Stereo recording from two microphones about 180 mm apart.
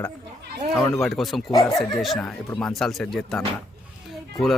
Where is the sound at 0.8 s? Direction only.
15° left (ahead or behind).